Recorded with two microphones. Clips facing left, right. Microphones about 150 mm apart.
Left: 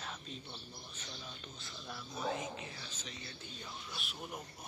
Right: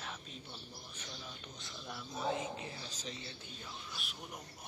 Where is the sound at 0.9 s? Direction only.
10° right (ahead or behind).